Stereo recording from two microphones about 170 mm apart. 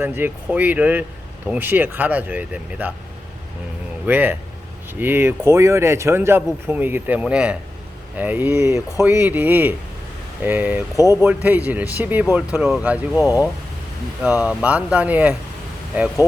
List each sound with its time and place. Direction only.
0.0 s speech: 10° right (ahead or behind)
4.0 s speech: 10° right (ahead or behind)
10.9 s speech: 20° left (ahead or behind)
11.4 s speech: 10° right (ahead or behind)